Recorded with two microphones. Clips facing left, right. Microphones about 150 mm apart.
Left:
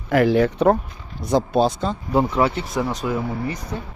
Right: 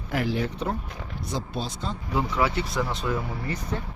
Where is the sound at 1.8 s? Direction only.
55° left (ahead or behind).